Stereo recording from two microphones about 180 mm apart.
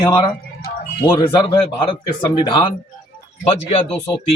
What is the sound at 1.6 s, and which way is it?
A man's voice, 30° left (ahead or behind).